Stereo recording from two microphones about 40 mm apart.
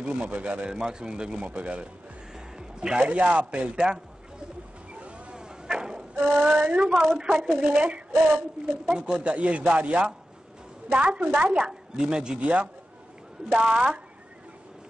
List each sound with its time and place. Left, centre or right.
0.0 s a man's voice: right
0.7 s a woman's voice: centre
2.3 s music: centre
3.0 s a woman's voice: right
4.9 s vehicle: right
5.3 s a sound: centre
6.4 s speech: right
7.2 s a woman's voice: centre
7.7 s a man's voice: right
8.8 s a woman's voice: centre
9.2 s a man's voice: right
12.4 s a man's voice: right
13.5 s a woman's voice: centre